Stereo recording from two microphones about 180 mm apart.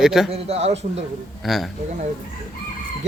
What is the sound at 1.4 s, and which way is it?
Speech, centre (ahead or behind).